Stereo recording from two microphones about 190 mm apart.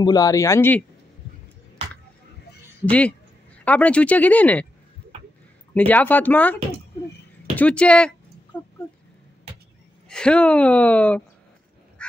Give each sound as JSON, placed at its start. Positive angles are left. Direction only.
{"t": 0.0, "sound": "a woman's voice", "side_deg": 20}
{"t": 2.8, "sound": "a woman's voice", "side_deg": 5}
{"t": 5.8, "sound": "a woman's voice", "side_deg": 10}
{"t": 8.5, "sound": "a sound", "side_deg": 10}
{"t": 10.0, "sound": "a woman's voice", "side_deg": 5}
{"t": 12.0, "sound": "honk", "side_deg": 5}